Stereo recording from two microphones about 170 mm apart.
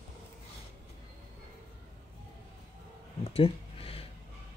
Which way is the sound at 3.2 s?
35° left (ahead or behind).